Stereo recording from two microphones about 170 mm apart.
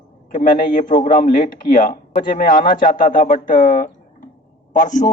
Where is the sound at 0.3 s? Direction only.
55° left (ahead or behind).